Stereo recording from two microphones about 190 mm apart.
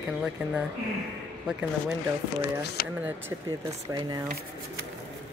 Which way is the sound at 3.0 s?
10° right (ahead or behind).